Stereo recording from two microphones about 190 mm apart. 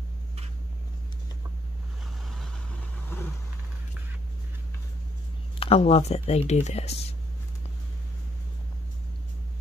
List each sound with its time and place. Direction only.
5.6 s speech: 30° left (ahead or behind)